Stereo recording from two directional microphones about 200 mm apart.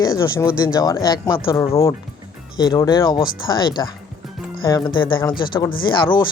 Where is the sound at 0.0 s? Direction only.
15° left (ahead or behind).